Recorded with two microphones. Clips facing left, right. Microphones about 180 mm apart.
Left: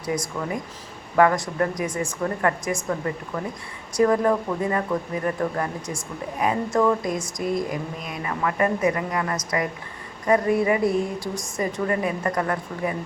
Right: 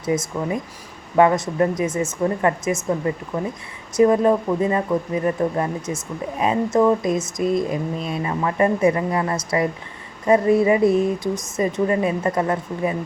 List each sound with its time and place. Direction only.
0.0 s speech: 25° right (ahead or behind)